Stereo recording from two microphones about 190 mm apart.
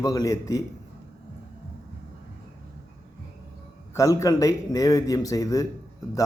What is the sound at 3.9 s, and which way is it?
Speech, 15° left (ahead or behind).